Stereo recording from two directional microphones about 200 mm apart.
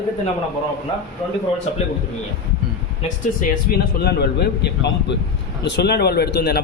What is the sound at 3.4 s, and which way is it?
Speech, 50° left (ahead or behind).